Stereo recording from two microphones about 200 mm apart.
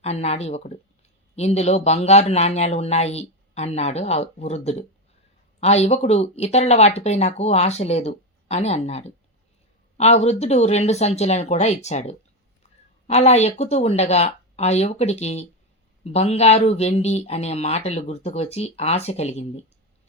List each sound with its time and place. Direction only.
0.0 s speech: 30° left (ahead or behind)